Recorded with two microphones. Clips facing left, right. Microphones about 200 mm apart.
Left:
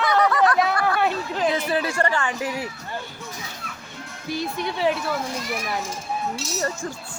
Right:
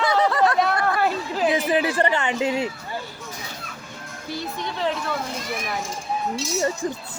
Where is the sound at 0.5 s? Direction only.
Centre (ahead or behind); by 2.7 s 25° right (ahead or behind).